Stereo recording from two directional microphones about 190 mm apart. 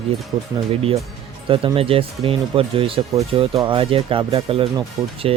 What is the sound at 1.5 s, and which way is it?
Speech, 30° right (ahead or behind).